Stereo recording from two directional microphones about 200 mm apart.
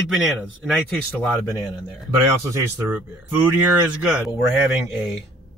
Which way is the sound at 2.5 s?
15° right (ahead or behind).